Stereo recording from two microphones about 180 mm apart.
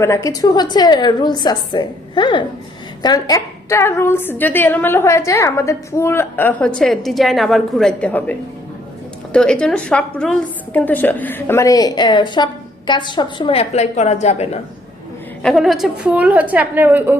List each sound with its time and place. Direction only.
0.0 s a woman's voice: 15° left (ahead or behind); by 14.6 s 35° left (ahead or behind)
15.4 s a woman's voice: centre (ahead or behind)